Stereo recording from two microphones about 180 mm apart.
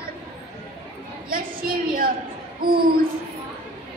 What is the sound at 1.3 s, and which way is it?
A woman's voice, 55° right (ahead or behind).